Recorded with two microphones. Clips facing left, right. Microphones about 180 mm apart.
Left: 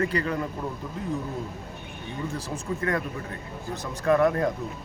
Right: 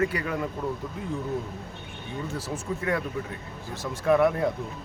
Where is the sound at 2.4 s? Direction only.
25° right (ahead or behind).